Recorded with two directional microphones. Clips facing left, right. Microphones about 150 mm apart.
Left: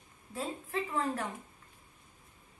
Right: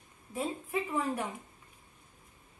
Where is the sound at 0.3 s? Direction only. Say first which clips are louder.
Right 3 dB; 20° right (ahead or behind).